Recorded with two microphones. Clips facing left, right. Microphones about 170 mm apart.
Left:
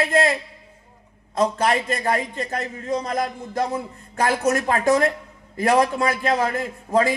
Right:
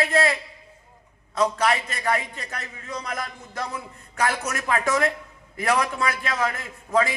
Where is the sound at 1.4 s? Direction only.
45° left (ahead or behind).